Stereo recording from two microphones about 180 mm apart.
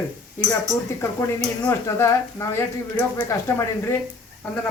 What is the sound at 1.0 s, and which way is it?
Speech, 15° left (ahead or behind).